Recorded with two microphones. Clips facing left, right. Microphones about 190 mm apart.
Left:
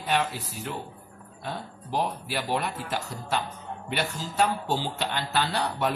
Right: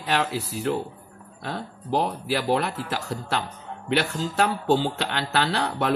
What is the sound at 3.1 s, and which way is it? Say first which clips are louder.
Speech: right 2 dB; 75° right (ahead or behind).